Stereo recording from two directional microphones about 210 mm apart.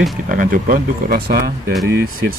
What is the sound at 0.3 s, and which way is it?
Speech, 40° right (ahead or behind).